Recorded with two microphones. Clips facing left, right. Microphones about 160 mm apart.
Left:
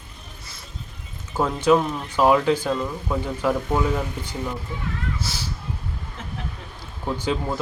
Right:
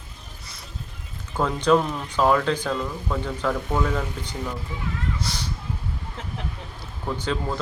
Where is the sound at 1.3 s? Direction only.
10° left (ahead or behind).